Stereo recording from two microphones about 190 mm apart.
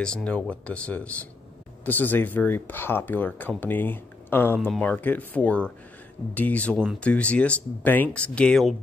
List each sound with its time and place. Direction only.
0.0 s speech: 5° left (ahead or behind)